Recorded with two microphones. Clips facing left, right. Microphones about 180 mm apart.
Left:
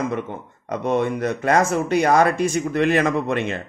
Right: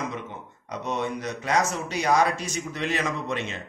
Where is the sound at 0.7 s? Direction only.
55° left (ahead or behind).